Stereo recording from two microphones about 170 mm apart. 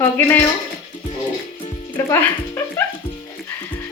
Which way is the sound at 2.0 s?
15° left (ahead or behind).